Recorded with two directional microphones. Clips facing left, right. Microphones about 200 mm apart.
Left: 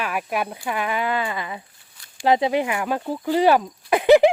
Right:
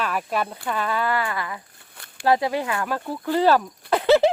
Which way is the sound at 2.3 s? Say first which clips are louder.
Left 2 dB; 20° left (ahead or behind).